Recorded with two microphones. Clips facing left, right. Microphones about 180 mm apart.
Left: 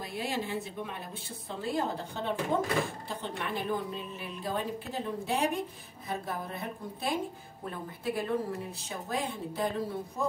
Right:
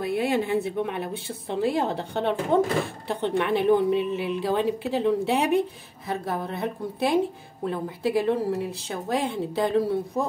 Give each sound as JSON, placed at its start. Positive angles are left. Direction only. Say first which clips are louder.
{"t": 0.0, "sound": "a woman's voice", "louder": "right 10 dB", "side_deg": -60}